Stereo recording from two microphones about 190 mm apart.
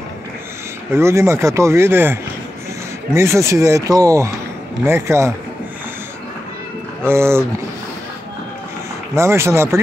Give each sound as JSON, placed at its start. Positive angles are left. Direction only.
{"t": 0.9, "sound": "speech", "side_deg": -15}
{"t": 3.2, "sound": "speech", "side_deg": -15}
{"t": 7.1, "sound": "speech", "side_deg": -15}
{"t": 9.1, "sound": "speech", "side_deg": -15}